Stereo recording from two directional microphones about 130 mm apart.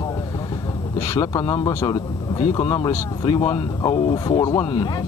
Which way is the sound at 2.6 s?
40° left (ahead or behind).